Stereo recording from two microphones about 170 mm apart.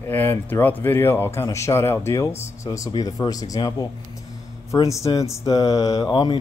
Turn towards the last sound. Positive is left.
turn(degrees=25)  # may be behind; listen again after turning